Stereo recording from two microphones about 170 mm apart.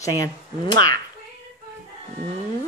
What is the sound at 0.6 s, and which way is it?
Speech, 70° right (ahead or behind).